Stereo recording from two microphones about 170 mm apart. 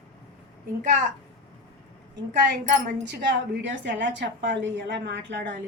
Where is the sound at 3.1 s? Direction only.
90° right.